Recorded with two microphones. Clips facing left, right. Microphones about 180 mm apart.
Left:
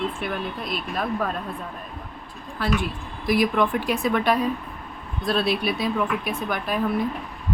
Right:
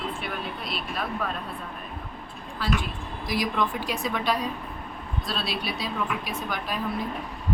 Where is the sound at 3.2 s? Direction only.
55° left (ahead or behind).